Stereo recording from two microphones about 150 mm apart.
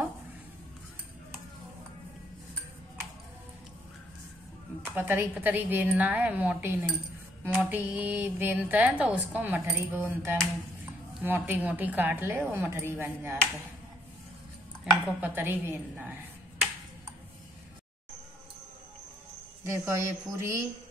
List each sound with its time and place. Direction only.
4.9 s speech: 15° right (ahead or behind)
14.9 s speech: 10° right (ahead or behind)
19.6 s speech: 20° right (ahead or behind)